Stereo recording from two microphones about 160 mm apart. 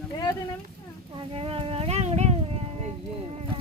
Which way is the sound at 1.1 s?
35° right (ahead or behind).